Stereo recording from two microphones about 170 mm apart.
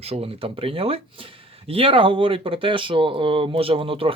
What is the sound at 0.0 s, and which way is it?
Speech, 35° right (ahead or behind).